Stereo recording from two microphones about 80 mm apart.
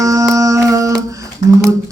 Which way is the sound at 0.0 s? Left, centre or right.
Right.